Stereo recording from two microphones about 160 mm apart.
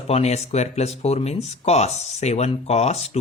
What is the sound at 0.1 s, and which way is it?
Speech, 40° left (ahead or behind).